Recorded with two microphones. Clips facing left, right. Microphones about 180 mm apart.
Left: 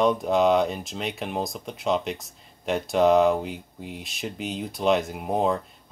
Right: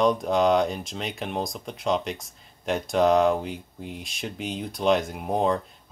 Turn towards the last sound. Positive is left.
turn(degrees=0)  # may be behind; listen again after turning